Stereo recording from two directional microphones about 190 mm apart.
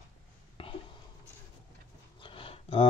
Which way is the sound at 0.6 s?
30° left (ahead or behind).